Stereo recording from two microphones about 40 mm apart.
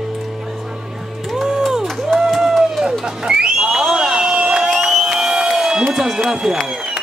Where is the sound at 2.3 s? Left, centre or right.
Centre.